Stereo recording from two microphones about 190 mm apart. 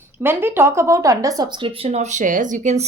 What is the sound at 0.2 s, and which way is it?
Speech, 10° right (ahead or behind).